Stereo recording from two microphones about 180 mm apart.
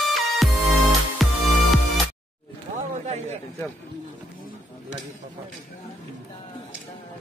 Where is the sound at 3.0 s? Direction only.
40° right (ahead or behind).